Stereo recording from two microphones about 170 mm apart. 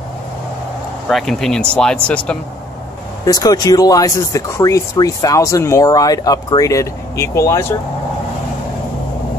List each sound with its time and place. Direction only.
1.0 s speech: 5° left (ahead or behind)
3.3 s speech: 20° left (ahead or behind)